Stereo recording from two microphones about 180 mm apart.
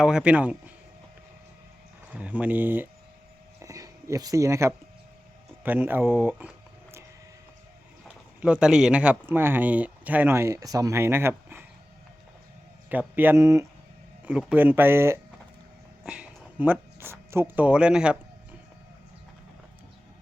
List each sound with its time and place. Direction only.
0.0 s speech: 5° right (ahead or behind)
2.0 s speech: 10° right (ahead or behind)
3.6 s a sound: 20° right (ahead or behind)
5.6 s speech: 10° right (ahead or behind)
8.0 s speech: 5° right (ahead or behind)
12.9 s speech: 10° right (ahead or behind)